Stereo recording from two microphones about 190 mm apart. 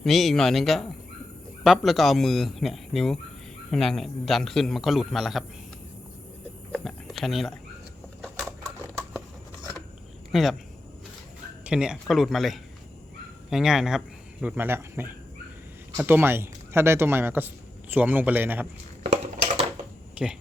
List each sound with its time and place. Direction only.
0.0 s a man's voice: centre (ahead or behind)
6.7 s a sound: centre (ahead or behind)
10.3 s a man's voice: centre (ahead or behind)
11.6 s a man's voice: 5° right (ahead or behind)
19.0 s a sound: 35° right (ahead or behind)
20.2 s speech: 5° right (ahead or behind)